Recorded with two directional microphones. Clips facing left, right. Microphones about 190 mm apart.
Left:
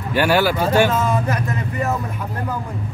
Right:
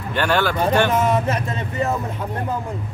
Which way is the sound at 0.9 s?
20° right (ahead or behind).